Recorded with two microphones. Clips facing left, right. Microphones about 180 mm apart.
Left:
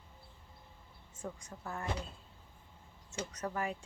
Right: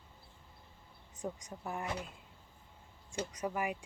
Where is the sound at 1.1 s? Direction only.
20° right (ahead or behind).